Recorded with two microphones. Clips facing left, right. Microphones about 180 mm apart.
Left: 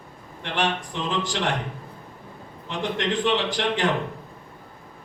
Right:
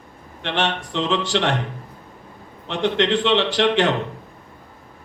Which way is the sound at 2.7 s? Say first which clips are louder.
Right 6 dB; 80° right.